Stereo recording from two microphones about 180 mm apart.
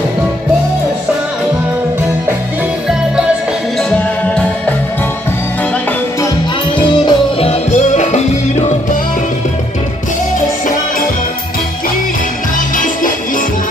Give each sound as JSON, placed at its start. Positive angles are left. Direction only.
{"t": 6.8, "sound": "music", "side_deg": 25}
{"t": 12.7, "sound": "music", "side_deg": 50}